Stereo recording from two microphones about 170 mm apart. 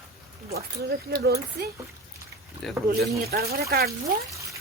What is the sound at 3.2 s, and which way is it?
Speech, 65° right (ahead or behind).